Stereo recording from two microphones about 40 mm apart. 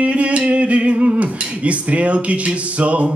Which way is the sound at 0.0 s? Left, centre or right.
Right.